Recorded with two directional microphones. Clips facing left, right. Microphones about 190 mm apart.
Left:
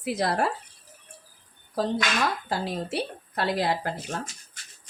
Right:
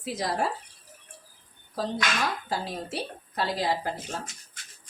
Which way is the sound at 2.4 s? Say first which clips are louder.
Left 3 dB; 60° left (ahead or behind).